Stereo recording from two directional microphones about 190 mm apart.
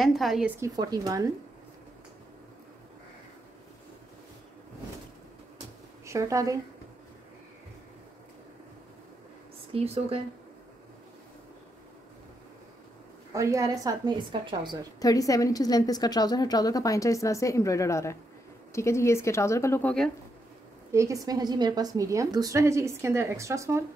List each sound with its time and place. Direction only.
0.0 s a woman's voice: centre (ahead or behind)
0.6 s a woman's voice: 20° right (ahead or behind)
6.0 s a woman's voice: 15° right (ahead or behind)
9.7 s speech: 30° right (ahead or behind)
13.3 s a woman's voice: 15° right (ahead or behind)
15.0 s a woman's voice: 20° left (ahead or behind)
20.9 s a woman's voice: 15° right (ahead or behind)